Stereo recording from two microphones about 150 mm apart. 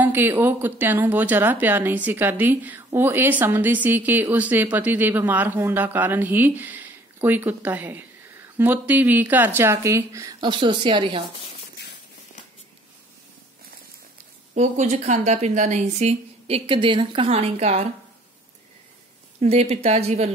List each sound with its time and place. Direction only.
0.0 s a woman's voice: 15° right (ahead or behind)
10.4 s speech: 30° right (ahead or behind)
14.5 s speech: 50° right (ahead or behind)
19.4 s speech: 45° right (ahead or behind)